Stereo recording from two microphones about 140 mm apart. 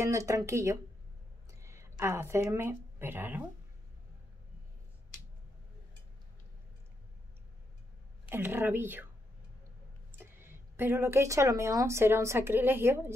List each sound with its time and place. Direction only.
0.0 s a woman's voice: 20° right (ahead or behind)
8.3 s speech: 15° right (ahead or behind)
10.1 s speech: 15° right (ahead or behind)